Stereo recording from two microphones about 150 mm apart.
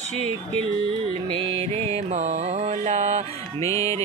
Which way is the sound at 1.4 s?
40° right (ahead or behind).